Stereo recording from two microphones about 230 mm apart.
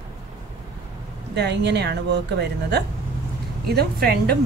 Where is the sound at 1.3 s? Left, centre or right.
Right.